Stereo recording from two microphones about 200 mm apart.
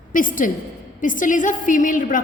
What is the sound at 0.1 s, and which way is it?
A woman's voice, 45° left (ahead or behind).